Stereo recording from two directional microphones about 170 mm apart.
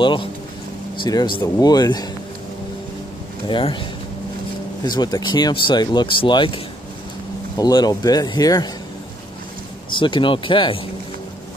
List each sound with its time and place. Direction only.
0.0 s speech: 30° left (ahead or behind)
3.4 s speech: 30° left (ahead or behind)
4.8 s speech: 25° left (ahead or behind)
9.8 s speech: 30° left (ahead or behind)